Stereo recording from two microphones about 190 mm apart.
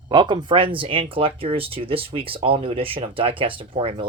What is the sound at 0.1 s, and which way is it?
Speech, 25° right (ahead or behind).